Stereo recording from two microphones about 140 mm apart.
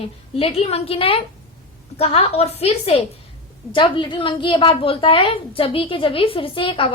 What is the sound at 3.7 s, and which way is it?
A woman's voice, 35° left (ahead or behind).